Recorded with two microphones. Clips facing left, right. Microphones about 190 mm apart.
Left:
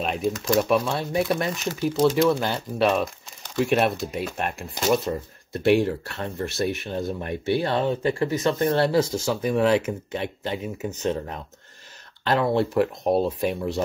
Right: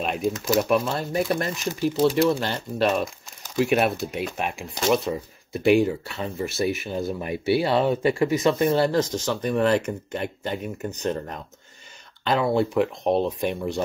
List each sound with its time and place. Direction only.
0.0 s speech: centre (ahead or behind)
8.7 s speech: 5° left (ahead or behind)